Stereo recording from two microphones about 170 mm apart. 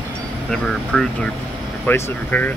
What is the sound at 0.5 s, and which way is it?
Speech, 5° left (ahead or behind).